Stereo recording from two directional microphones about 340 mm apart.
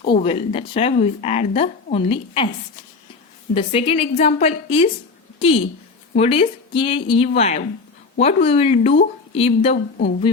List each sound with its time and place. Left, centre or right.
0.1 s a woman's voice: centre
3.5 s a woman's voice: centre